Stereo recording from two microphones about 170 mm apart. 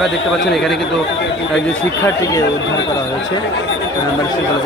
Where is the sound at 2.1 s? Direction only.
20° left (ahead or behind).